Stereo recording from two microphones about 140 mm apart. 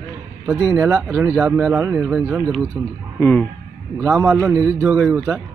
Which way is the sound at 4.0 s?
15° right (ahead or behind).